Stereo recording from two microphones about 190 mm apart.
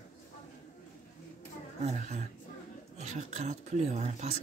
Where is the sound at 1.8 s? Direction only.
35° right (ahead or behind).